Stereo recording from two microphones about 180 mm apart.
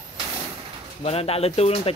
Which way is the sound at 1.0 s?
35° left (ahead or behind).